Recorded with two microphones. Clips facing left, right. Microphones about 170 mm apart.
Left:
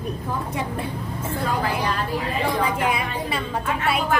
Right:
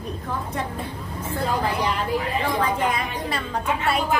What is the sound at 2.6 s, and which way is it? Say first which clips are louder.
Speech: even; 10° left (ahead or behind).